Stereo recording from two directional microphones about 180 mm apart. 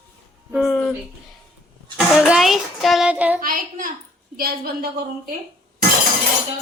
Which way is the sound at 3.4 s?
50° right (ahead or behind).